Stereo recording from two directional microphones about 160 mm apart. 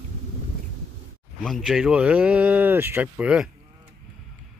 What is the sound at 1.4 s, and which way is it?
Speech, centre (ahead or behind).